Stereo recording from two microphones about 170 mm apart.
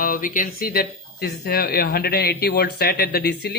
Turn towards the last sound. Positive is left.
turn(degrees=70)  # may be behind; listen again after turning